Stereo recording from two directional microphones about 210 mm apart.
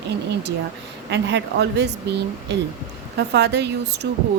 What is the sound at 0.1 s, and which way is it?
A woman's voice, 55° right (ahead or behind).